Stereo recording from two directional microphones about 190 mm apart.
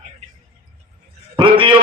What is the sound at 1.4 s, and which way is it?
Speech, 25° right (ahead or behind).